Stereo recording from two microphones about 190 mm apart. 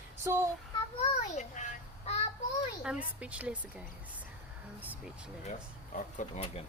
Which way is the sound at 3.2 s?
5° right (ahead or behind).